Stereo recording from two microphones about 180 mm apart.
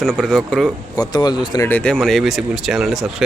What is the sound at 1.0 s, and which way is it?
Speech, 25° left (ahead or behind).